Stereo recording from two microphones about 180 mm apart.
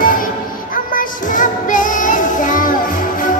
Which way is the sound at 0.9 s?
45° left (ahead or behind).